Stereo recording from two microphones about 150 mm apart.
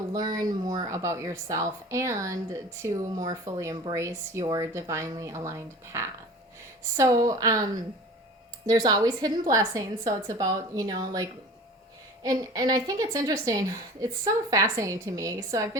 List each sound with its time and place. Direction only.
0.1 s a woman's voice: 25° right (ahead or behind)